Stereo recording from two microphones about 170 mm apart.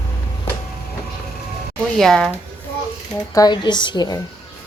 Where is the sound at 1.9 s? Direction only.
5° left (ahead or behind).